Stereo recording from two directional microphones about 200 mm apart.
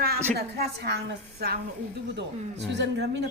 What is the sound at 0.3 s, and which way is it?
A woman's voice, 55° right (ahead or behind).